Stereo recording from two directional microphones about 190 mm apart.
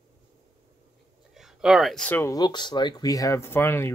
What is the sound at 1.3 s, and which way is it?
Speech, centre (ahead or behind).